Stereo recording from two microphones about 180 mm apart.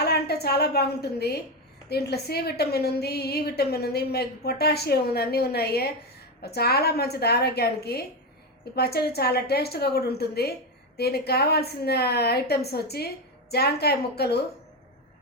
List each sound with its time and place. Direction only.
0.0 s a woman's voice: 65° left (ahead or behind)